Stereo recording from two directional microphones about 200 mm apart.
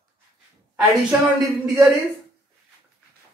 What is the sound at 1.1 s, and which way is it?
Speech, 10° right (ahead or behind).